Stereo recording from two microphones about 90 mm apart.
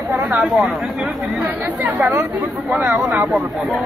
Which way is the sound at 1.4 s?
20° right (ahead or behind).